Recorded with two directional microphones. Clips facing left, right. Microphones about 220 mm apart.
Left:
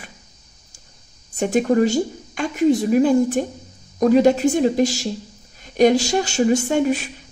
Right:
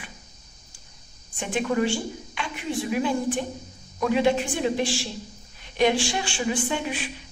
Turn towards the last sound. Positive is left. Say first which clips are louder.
# left 9 dB
turn(degrees=45)  # may be behind; listen again after turning